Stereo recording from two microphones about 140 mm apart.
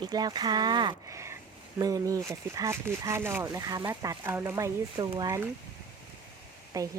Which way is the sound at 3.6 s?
30° right (ahead or behind).